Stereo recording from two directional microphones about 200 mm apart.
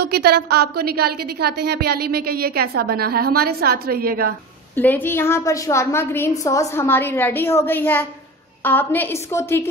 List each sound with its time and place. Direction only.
0.0 s a woman's voice: 50° right (ahead or behind)
4.7 s a woman's voice: 10° left (ahead or behind)